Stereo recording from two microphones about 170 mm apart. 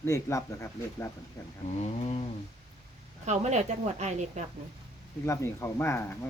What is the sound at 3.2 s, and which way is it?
A woman's voice, 45° right (ahead or behind).